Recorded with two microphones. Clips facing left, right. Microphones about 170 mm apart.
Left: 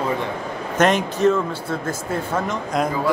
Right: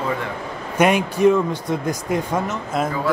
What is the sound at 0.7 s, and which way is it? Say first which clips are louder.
Speech: right 1 dB; 10° right (ahead or behind).